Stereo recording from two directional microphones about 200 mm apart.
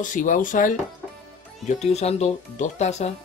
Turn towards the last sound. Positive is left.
turn(degrees=35)  # may be behind; listen again after turning